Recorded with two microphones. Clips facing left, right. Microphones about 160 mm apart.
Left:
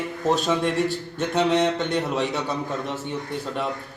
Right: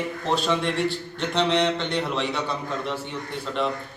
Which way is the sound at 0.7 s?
45° left (ahead or behind).